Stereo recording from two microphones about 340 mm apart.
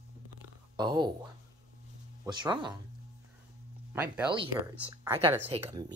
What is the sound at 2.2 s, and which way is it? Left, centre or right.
Speech, centre.